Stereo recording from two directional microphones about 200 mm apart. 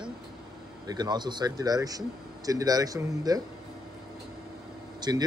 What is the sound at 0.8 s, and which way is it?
Speech, 20° right (ahead or behind).